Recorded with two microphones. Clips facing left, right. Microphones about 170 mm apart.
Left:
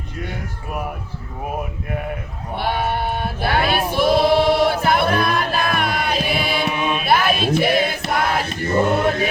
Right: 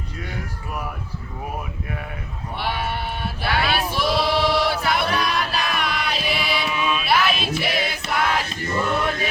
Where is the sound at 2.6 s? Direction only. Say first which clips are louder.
Left 5 dB; 50° left (ahead or behind).